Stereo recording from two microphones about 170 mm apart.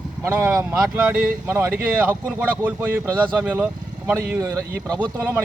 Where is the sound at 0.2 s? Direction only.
15° right (ahead or behind).